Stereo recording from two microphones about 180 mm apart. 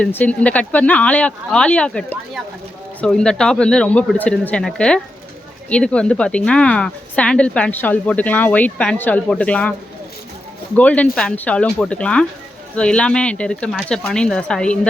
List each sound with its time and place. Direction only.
0.0 s a woman's voice: 10° left (ahead or behind)
10.8 s speech: 10° left (ahead or behind)